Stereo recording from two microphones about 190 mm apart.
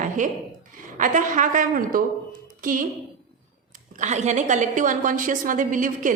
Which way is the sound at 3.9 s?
40° right (ahead or behind).